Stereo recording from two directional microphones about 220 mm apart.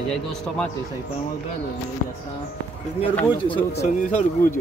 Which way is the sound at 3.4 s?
30° left (ahead or behind).